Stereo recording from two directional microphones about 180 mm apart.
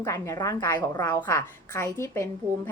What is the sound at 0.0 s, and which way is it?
A woman's voice, 15° left (ahead or behind).